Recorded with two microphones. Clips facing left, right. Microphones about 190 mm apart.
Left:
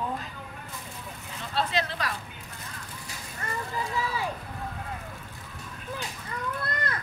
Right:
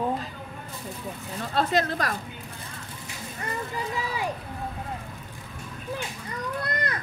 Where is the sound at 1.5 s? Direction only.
45° right (ahead or behind).